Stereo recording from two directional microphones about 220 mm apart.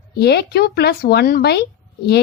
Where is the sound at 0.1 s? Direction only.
50° left (ahead or behind).